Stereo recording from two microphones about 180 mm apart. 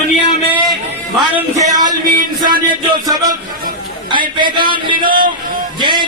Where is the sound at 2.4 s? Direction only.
25° right (ahead or behind).